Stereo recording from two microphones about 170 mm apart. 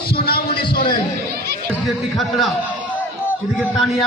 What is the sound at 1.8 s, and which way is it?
Speech, centre (ahead or behind).